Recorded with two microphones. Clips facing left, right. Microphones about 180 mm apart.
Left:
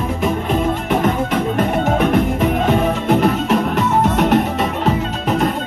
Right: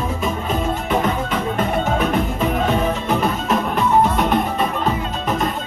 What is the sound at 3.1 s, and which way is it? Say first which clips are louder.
Music: left 4 dB; 75° left (ahead or behind).